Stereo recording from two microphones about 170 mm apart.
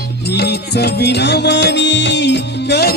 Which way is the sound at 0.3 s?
75° left (ahead or behind).